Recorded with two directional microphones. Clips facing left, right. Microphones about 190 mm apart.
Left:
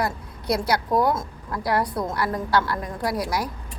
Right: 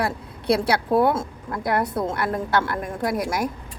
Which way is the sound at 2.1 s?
55° right (ahead or behind).